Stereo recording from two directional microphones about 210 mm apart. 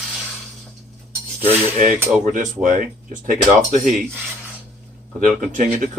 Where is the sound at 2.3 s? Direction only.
40° right (ahead or behind).